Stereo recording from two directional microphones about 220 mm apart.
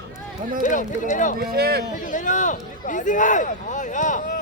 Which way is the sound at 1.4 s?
45° right (ahead or behind).